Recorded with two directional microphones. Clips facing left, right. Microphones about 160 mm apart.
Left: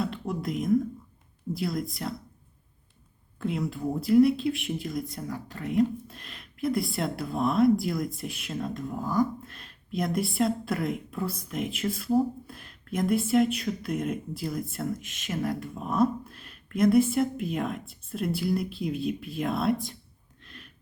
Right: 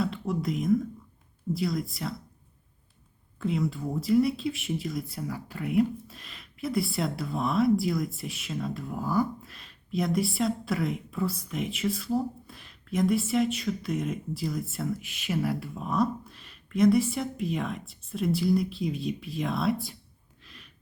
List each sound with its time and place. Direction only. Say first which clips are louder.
0.0 s a sound: right 1 dB; centre (ahead or behind)
1.5 s speech: even; centre (ahead or behind)
3.4 s speech: even; centre (ahead or behind)
15.0 s speech: even; 45° left (ahead or behind)
15.4 s speech: even; 5° right (ahead or behind)
20.4 s a sound: left 4 dB; centre (ahead or behind)